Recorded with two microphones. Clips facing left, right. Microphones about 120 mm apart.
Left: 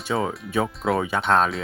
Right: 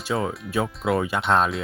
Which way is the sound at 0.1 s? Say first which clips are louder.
Left 1 dB; centre (ahead or behind).